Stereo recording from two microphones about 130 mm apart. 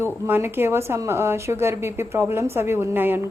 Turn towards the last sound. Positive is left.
turn(degrees=-15)  # may be behind; listen again after turning